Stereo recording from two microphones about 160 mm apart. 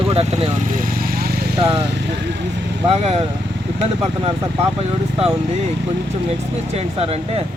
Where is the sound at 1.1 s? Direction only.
70° right (ahead or behind).